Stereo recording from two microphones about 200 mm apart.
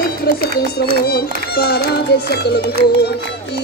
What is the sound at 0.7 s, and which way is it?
Speech, 50° left (ahead or behind).